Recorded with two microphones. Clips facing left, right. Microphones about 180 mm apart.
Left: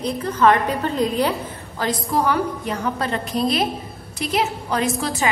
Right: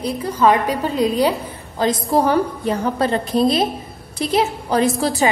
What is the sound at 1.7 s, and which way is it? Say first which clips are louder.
A woman's voice: right 5 dB; 30° right (ahead or behind).